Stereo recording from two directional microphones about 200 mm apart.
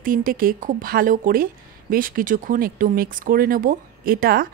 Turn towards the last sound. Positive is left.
turn(degrees=-45)  # may be behind; listen again after turning